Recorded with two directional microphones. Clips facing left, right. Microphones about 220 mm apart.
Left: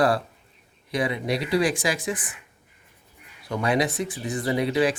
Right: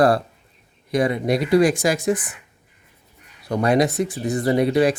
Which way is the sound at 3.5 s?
40° right (ahead or behind).